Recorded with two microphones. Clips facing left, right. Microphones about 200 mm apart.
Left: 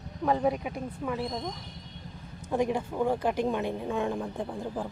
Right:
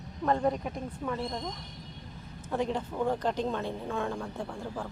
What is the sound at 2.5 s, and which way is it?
A woman's voice, 15° left (ahead or behind).